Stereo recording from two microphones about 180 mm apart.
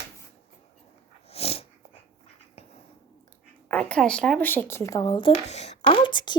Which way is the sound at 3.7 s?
5° left (ahead or behind).